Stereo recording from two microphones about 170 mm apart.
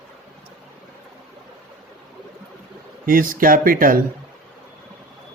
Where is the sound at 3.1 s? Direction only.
55° right (ahead or behind).